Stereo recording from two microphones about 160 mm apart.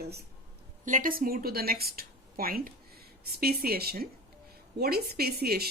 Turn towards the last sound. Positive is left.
turn(degrees=-75)  # may be behind; listen again after turning